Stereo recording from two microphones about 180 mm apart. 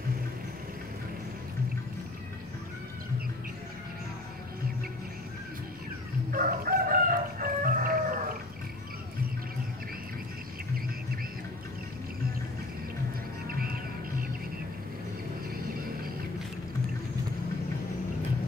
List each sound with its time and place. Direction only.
6.3 s chicken: 50° right (ahead or behind)
13.5 s music: 55° right (ahead or behind)